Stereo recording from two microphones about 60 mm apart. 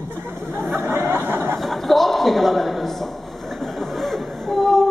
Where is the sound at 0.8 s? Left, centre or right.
Right.